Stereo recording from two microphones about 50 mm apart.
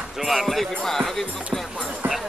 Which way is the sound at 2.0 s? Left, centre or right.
Right.